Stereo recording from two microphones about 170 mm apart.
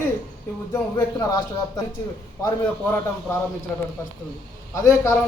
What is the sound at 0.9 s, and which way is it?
Speech, 20° left (ahead or behind).